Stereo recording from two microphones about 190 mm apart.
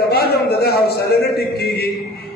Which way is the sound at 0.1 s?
55° left (ahead or behind).